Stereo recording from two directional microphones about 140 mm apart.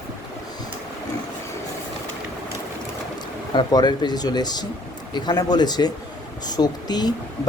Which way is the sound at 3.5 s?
30° left (ahead or behind).